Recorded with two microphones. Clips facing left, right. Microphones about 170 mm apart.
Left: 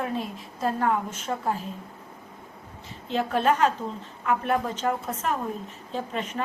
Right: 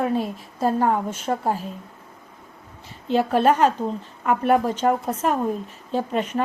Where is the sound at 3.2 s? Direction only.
45° right (ahead or behind).